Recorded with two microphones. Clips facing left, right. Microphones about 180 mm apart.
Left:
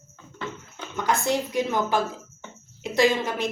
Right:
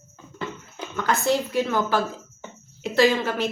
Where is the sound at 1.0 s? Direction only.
15° left (ahead or behind).